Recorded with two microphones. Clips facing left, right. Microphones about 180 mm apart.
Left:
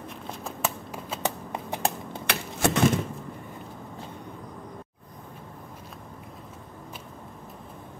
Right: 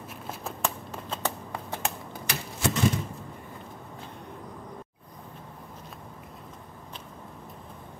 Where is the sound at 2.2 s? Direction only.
60° left (ahead or behind).